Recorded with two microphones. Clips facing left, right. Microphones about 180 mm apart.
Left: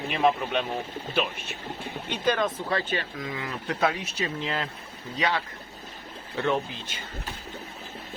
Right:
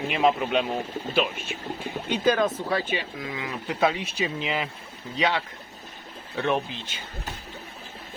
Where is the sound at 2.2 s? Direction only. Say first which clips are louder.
Right 3 dB; 10° right (ahead or behind).